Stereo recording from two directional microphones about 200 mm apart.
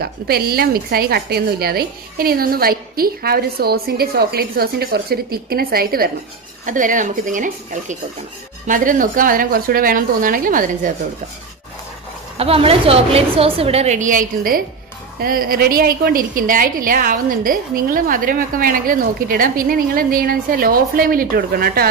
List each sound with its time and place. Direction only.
0.0 s a woman's voice: 50° right (ahead or behind)
12.4 s a woman's voice: 30° right (ahead or behind); by 21.8 s 50° right (ahead or behind)